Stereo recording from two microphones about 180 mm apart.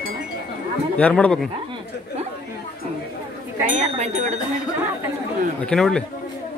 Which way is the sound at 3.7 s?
40° right (ahead or behind).